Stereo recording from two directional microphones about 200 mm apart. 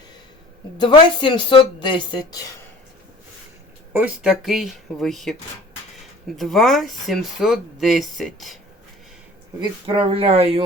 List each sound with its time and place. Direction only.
0.8 s speech: 20° left (ahead or behind)
3.9 s speech: 5° right (ahead or behind)
9.6 s speech: 25° right (ahead or behind)